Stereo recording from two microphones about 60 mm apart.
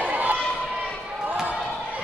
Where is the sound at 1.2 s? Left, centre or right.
Centre.